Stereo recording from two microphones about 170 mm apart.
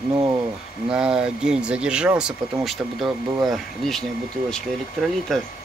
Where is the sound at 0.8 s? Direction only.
5° right (ahead or behind).